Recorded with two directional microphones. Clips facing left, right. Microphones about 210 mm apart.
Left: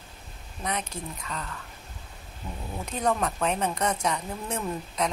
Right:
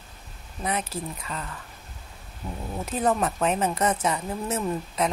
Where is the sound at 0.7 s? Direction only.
5° right (ahead or behind).